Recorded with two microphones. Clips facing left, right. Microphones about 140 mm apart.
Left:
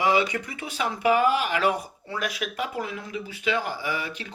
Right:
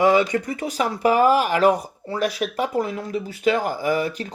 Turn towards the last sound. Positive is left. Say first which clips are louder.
# right 9 dB
turn(degrees=-45)  # may be behind; listen again after turning